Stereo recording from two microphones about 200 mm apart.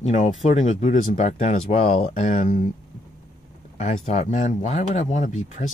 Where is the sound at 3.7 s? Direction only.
35° left (ahead or behind).